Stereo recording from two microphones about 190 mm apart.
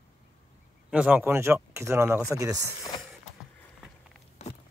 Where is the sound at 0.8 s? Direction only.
5° right (ahead or behind).